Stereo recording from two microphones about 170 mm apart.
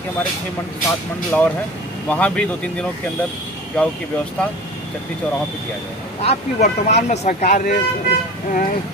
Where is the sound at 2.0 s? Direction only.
5° left (ahead or behind).